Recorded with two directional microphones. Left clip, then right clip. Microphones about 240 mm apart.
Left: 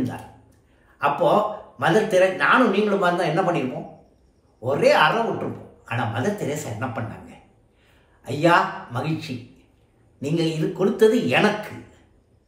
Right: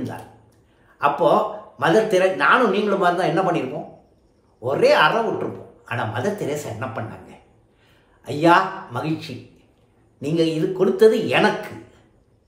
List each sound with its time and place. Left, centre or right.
0.9 s a man's voice: centre